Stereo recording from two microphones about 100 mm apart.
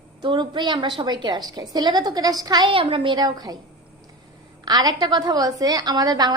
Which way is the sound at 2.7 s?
65° right (ahead or behind).